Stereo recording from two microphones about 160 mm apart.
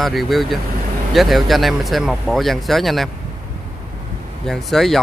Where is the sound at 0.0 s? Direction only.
Centre (ahead or behind).